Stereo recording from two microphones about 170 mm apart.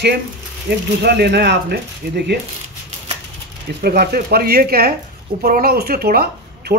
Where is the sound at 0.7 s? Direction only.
80° right.